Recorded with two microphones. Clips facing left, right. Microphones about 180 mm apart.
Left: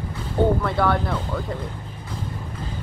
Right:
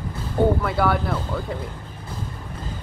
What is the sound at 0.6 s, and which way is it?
Speech, 5° right (ahead or behind).